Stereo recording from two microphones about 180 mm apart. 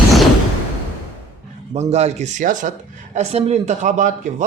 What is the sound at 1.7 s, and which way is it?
Speech, 35° right (ahead or behind).